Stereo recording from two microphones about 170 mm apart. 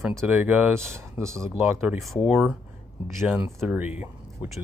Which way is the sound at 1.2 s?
5° left (ahead or behind).